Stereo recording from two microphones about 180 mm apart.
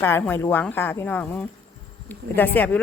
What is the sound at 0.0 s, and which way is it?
Speech, 10° left (ahead or behind).